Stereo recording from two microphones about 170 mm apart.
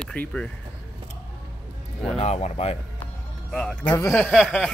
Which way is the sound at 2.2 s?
40° left (ahead or behind).